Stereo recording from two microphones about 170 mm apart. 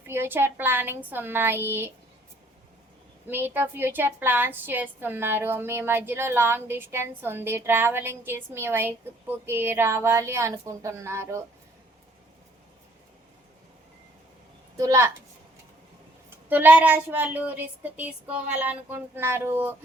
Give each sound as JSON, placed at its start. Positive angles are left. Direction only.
{"t": 0.0, "sound": "a woman's voice", "side_deg": -15}
{"t": 3.2, "sound": "a woman's voice", "side_deg": -10}
{"t": 14.8, "sound": "a woman's voice", "side_deg": -20}
{"t": 16.5, "sound": "a woman's voice", "side_deg": -10}